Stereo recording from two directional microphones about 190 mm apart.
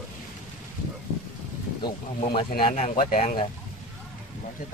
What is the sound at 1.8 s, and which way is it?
Speech, 25° left (ahead or behind).